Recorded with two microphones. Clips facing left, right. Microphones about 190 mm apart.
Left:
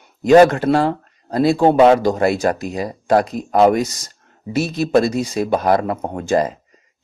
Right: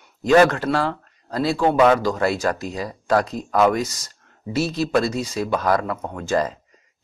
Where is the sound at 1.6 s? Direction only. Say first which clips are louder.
Left 4 dB; 30° left (ahead or behind).